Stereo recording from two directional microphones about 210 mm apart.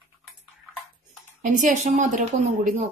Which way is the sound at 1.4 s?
35° right (ahead or behind).